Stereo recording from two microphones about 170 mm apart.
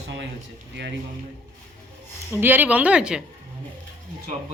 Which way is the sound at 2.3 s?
10° right (ahead or behind).